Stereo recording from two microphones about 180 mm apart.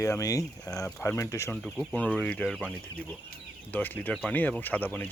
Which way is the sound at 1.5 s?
Centre (ahead or behind).